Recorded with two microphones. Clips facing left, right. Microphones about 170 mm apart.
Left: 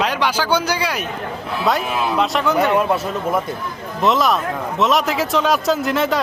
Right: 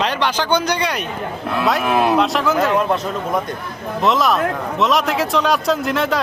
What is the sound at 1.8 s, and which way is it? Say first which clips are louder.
Speech: right 5 dB; 65° right (ahead or behind).